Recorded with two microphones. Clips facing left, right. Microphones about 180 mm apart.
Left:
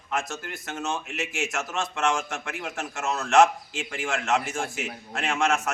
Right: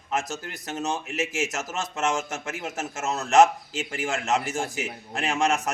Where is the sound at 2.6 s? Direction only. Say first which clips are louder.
Right 1 dB; 40° right (ahead or behind).